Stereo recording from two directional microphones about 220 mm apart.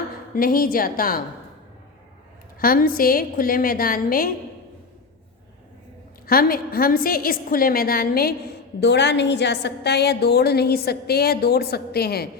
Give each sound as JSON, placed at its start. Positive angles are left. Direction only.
{"t": 0.3, "sound": "a woman's voice", "side_deg": 40}
{"t": 2.6, "sound": "a woman's voice", "side_deg": 40}
{"t": 6.2, "sound": "a woman's voice", "side_deg": 40}